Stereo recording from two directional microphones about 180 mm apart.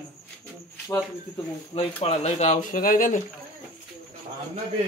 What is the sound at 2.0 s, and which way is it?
Speech, 35° left (ahead or behind).